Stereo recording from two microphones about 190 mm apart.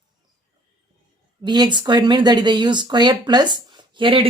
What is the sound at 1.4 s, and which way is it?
Speech, 25° right (ahead or behind).